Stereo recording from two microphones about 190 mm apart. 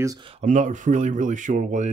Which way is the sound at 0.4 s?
40° right (ahead or behind).